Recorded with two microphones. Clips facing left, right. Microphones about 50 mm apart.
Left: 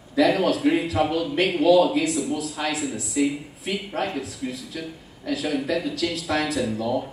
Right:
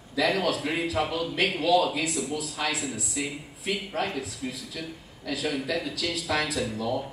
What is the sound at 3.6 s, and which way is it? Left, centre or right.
A man's voice, centre.